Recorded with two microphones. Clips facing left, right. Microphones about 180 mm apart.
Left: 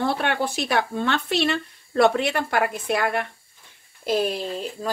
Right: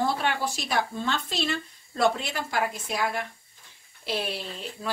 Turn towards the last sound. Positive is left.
turn(degrees=40)  # may be behind; listen again after turning